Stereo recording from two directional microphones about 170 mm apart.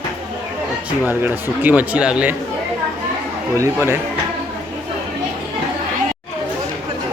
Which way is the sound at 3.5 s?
15° right (ahead or behind).